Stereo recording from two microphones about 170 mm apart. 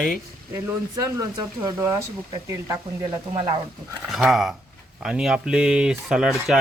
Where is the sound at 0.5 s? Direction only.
20° right (ahead or behind).